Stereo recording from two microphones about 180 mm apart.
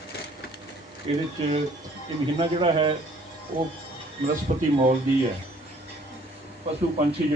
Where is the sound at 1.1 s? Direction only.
30° right (ahead or behind).